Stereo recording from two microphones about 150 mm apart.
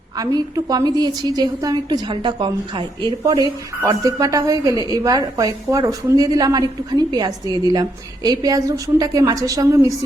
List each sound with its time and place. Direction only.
0.2 s a woman's voice: 25° right (ahead or behind)